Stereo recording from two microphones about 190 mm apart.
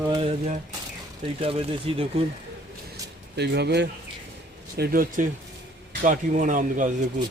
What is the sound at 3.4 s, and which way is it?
Speech, 60° right (ahead or behind).